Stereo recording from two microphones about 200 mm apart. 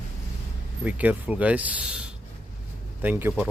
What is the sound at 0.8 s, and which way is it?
Speech, 10° right (ahead or behind).